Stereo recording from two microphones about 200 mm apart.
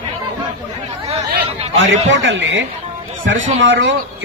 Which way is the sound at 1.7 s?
70° right (ahead or behind).